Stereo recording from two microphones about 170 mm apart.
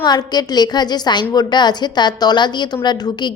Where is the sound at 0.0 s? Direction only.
25° left (ahead or behind).